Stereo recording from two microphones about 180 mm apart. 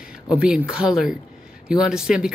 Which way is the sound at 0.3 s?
5° right (ahead or behind).